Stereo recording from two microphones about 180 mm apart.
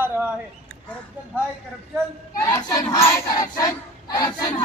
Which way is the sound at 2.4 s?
15° left (ahead or behind).